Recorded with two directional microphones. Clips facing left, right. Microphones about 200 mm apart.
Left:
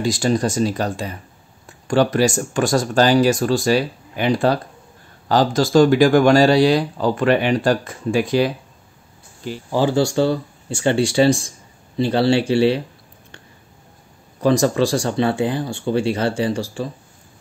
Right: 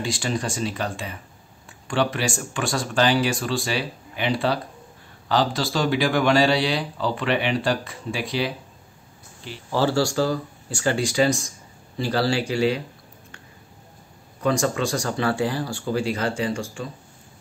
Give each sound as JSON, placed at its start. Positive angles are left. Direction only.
{"t": 0.0, "sound": "speech", "side_deg": 40}
{"t": 9.7, "sound": "speech", "side_deg": 15}
{"t": 14.4, "sound": "speech", "side_deg": 35}